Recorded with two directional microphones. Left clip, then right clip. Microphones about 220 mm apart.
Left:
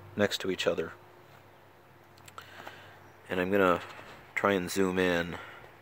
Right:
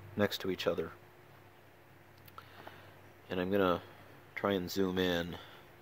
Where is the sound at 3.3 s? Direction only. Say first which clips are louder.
Left 5 dB; 5° left (ahead or behind).